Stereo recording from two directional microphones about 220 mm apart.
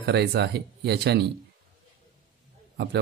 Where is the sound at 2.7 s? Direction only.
50° right (ahead or behind).